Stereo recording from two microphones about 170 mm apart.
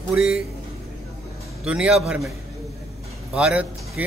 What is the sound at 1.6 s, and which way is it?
Speech, 5° right (ahead or behind).